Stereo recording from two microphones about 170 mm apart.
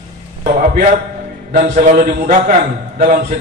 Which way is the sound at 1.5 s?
45° right (ahead or behind).